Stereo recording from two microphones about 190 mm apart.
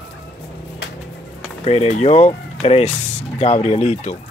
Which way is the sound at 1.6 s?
30° left (ahead or behind).